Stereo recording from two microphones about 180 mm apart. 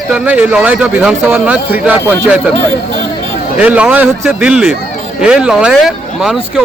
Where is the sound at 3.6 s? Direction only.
10° right (ahead or behind).